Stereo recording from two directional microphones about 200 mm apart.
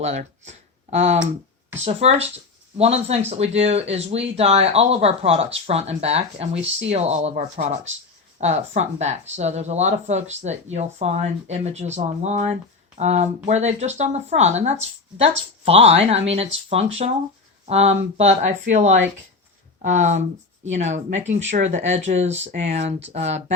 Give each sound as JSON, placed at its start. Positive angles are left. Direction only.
{"t": 0.0, "sound": "speech", "side_deg": -35}